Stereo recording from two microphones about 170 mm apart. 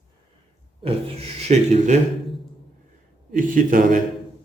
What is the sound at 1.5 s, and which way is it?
Speech, 40° right (ahead or behind).